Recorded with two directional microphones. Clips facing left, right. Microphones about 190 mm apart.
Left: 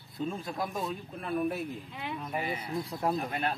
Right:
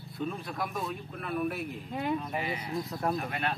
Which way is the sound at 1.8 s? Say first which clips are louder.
Right 7 dB; 45° right (ahead or behind).